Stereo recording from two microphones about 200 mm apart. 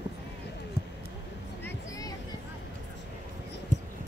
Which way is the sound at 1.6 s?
15° left (ahead or behind).